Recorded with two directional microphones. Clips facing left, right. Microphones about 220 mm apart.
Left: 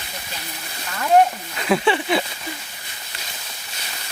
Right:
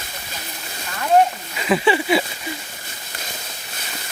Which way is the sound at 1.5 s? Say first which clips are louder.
Right 3 dB; 5° right (ahead or behind).